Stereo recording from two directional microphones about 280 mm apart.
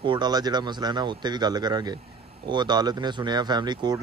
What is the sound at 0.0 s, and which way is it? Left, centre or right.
Speech, centre.